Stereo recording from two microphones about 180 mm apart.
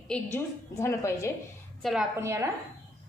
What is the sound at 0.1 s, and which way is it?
A woman's voice, 15° left (ahead or behind).